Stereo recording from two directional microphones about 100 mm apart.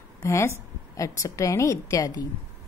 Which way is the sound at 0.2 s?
30° left (ahead or behind).